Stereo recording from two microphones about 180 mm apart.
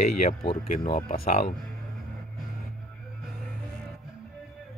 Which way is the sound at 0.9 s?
50° left (ahead or behind).